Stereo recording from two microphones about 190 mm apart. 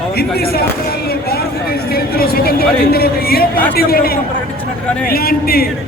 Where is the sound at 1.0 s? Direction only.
55° left (ahead or behind).